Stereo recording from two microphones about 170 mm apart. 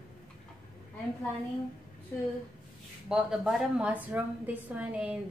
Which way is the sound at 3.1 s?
5° right (ahead or behind).